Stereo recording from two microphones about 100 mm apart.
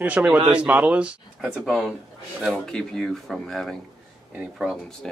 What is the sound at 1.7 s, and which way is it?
Speech, centre (ahead or behind).